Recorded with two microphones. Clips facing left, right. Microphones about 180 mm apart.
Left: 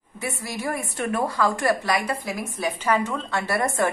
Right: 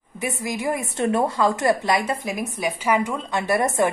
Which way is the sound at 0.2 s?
15° right (ahead or behind).